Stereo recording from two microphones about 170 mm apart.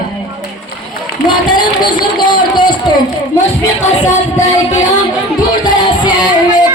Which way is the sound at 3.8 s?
40° left (ahead or behind).